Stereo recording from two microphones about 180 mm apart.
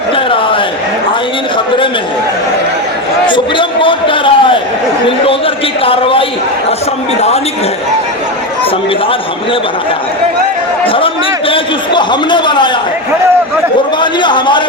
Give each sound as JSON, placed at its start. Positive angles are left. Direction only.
{"t": 3.2, "sound": "a sound", "side_deg": 25}
{"t": 5.0, "sound": "a man's voice", "side_deg": 30}
{"t": 10.8, "sound": "a man's voice", "side_deg": 30}
{"t": 14.0, "sound": "a man's voice", "side_deg": 25}